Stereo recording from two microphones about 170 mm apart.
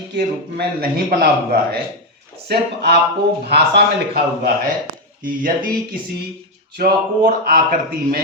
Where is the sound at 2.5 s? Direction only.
75° right (ahead or behind).